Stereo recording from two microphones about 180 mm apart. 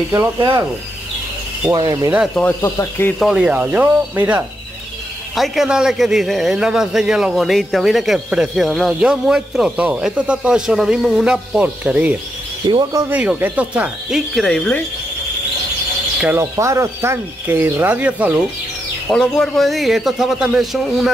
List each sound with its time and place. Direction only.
0.1 s speech: 15° right (ahead or behind)
1.7 s speech: 20° right (ahead or behind)
2.4 s speech: 15° left (ahead or behind)
3.2 s a man's voice: 5° right (ahead or behind)
12.6 s speech: 25° right (ahead or behind)
13.1 s a man's voice: 10° right (ahead or behind)
16.2 s speech: 10° right (ahead or behind)
19.0 s a man's voice: 5° left (ahead or behind)